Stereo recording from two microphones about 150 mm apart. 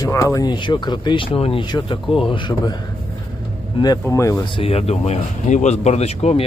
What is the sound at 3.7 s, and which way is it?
Speech, 25° left (ahead or behind).